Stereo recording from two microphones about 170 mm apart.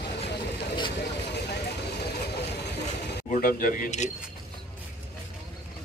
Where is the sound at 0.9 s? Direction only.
80° left.